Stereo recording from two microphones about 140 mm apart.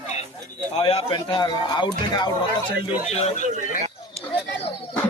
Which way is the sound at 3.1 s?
50° left (ahead or behind).